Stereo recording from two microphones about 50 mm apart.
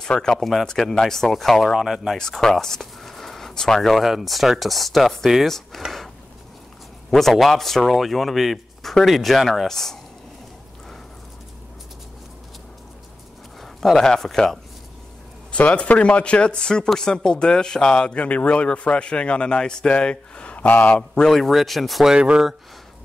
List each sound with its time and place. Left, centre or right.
0.0 s speech: centre
2.1 s speech: centre
7.1 s speech: centre
13.6 s speech: centre
15.5 s speech: left
21.4 s speech: centre
22.0 s speech: centre